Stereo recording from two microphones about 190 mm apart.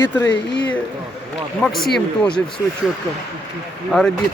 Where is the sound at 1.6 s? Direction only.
Centre (ahead or behind).